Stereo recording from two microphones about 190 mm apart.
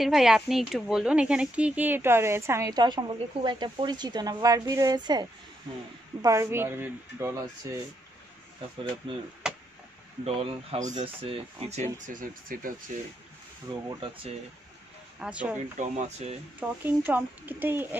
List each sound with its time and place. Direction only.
0.0 s speech: centre (ahead or behind); by 5.2 s 20° right (ahead or behind)
6.2 s speech: 15° right (ahead or behind)
9.0 s speech: 25° right (ahead or behind)
9.4 s a sound: 5° right (ahead or behind)
10.2 s speech: 30° right (ahead or behind); by 12.7 s 45° right (ahead or behind)
13.8 s speech: 25° right (ahead or behind)
15.1 s speech: 5° right (ahead or behind)
15.8 s speech: 35° right (ahead or behind)
16.5 s speech: 10° right (ahead or behind)